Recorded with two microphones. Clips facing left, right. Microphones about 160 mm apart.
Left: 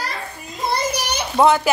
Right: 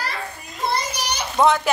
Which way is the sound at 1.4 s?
5° left (ahead or behind).